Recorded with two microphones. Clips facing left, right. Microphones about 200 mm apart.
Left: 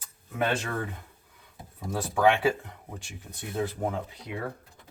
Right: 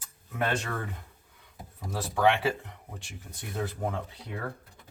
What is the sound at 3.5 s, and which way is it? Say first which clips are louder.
Speech: left 3 dB; 15° left (ahead or behind).